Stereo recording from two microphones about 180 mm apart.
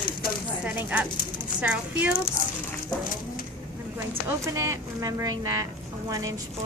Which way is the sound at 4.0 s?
15° right (ahead or behind).